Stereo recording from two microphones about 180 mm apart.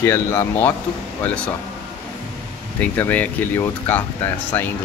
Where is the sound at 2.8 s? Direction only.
10° left (ahead or behind).